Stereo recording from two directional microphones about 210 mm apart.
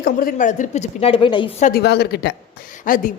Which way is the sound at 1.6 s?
45° left (ahead or behind).